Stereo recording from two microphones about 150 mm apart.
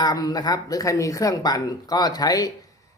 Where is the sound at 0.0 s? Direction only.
25° left (ahead or behind).